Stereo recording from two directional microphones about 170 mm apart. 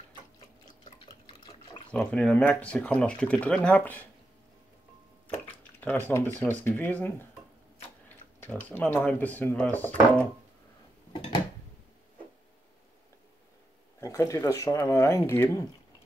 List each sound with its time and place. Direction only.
0.8 s drip: 30° left (ahead or behind)
1.9 s speech: 5° left (ahead or behind)
5.3 s speech: 10° left (ahead or behind)
8.4 s speech: 10° left (ahead or behind)
14.0 s speech: 15° left (ahead or behind)